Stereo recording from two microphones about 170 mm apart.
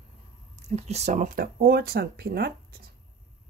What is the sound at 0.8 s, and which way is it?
Speech, 40° right (ahead or behind).